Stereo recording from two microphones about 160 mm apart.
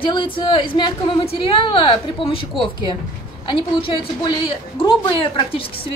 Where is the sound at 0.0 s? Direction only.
30° left (ahead or behind).